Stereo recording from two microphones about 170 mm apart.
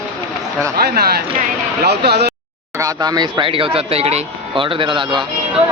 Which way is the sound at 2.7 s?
20° right (ahead or behind).